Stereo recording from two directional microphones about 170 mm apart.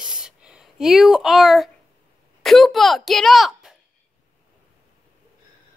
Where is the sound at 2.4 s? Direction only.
Centre (ahead or behind).